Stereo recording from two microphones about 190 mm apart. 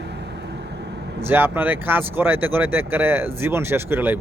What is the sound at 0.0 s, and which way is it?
Vehicle, 65° right (ahead or behind).